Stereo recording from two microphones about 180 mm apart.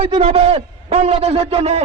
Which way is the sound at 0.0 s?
35° right (ahead or behind).